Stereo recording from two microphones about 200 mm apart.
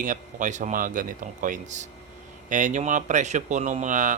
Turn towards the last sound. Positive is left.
turn(degrees=-40)  # may be behind; listen again after turning